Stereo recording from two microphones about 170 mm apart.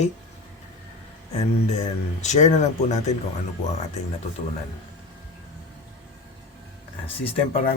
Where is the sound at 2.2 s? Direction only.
45° left (ahead or behind).